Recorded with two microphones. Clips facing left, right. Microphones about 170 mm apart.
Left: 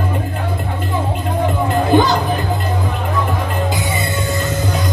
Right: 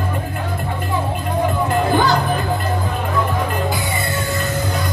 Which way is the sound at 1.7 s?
20° left (ahead or behind).